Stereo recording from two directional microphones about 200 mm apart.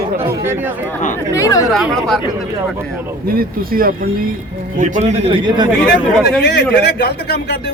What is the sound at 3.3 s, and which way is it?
Speech, 45° right (ahead or behind).